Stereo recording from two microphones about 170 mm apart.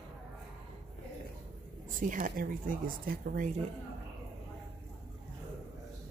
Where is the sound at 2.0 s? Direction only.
50° right (ahead or behind).